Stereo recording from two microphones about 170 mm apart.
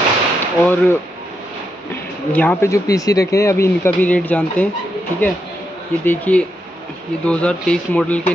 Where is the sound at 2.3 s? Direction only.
10° left (ahead or behind).